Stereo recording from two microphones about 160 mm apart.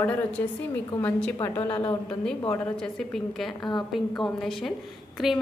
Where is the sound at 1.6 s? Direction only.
30° left (ahead or behind).